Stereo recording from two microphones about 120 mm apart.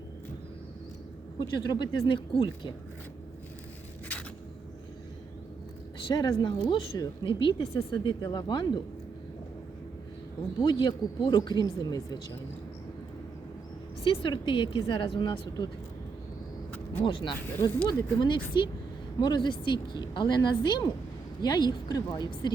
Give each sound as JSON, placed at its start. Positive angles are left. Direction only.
{"t": 1.4, "sound": "speech", "side_deg": 35}
{"t": 6.1, "sound": "speech", "side_deg": 35}
{"t": 6.9, "sound": "speech", "side_deg": 30}
{"t": 7.3, "sound": "speech", "side_deg": 45}
{"t": 10.6, "sound": "speech", "side_deg": 40}
{"t": 14.0, "sound": "speech", "side_deg": 50}
{"t": 17.0, "sound": "speech", "side_deg": 50}